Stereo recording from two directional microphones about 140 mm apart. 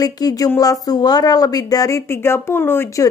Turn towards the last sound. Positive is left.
turn(degrees=20)  # may be behind; listen again after turning